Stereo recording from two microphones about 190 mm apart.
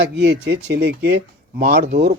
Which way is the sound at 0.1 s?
65° right (ahead or behind).